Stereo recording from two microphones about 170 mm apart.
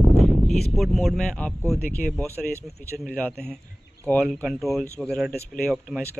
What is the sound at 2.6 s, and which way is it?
Speech, 5° left (ahead or behind).